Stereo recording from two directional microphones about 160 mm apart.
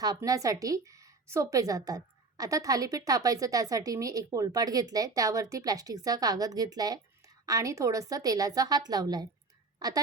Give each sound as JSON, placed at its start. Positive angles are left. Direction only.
{"t": 0.0, "sound": "a woman's voice", "side_deg": -20}